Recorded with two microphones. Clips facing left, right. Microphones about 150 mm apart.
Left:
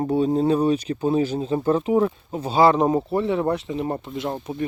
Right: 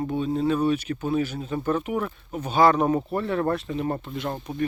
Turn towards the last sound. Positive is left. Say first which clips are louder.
# left 2 dB
turn(degrees=20)  # may be behind; listen again after turning